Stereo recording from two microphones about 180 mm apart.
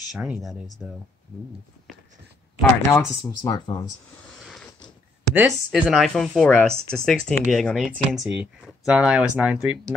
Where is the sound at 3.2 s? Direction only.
20° left (ahead or behind).